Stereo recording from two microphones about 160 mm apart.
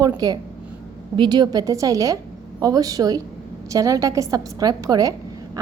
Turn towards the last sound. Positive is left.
turn(degrees=-20)  # may be behind; listen again after turning